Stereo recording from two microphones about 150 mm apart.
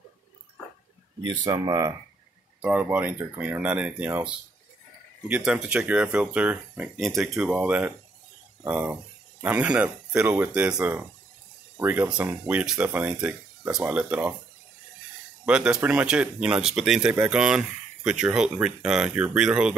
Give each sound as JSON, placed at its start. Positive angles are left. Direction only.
{"t": 1.2, "sound": "speech", "side_deg": -30}
{"t": 2.6, "sound": "speech", "side_deg": -10}
{"t": 5.3, "sound": "speech", "side_deg": -5}
{"t": 6.7, "sound": "speech", "side_deg": 0}
{"t": 15.4, "sound": "speech", "side_deg": -5}